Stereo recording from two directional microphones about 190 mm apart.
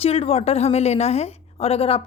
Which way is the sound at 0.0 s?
30° left (ahead or behind).